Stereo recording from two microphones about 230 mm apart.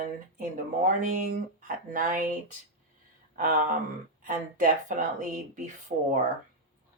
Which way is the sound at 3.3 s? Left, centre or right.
Right.